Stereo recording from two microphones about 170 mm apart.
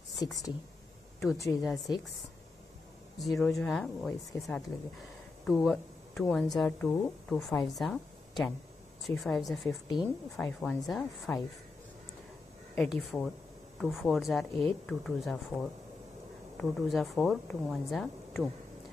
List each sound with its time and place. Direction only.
1.2 s a woman's voice: 20° left (ahead or behind)
1.6 s speech: centre (ahead or behind)
3.2 s a woman's voice: centre (ahead or behind)
12.7 s speech: 5° left (ahead or behind)
16.5 s speech: centre (ahead or behind)